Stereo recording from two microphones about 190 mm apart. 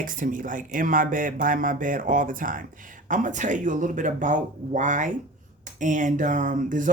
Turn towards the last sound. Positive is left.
turn(degrees=-45)  # may be behind; listen again after turning